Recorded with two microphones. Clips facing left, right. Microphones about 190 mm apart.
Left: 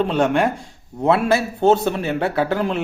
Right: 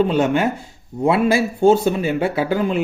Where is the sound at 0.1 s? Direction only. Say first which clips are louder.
Even; 5° right (ahead or behind).